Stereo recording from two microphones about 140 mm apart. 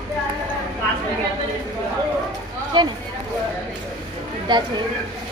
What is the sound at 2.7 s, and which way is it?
Speech, 30° right (ahead or behind).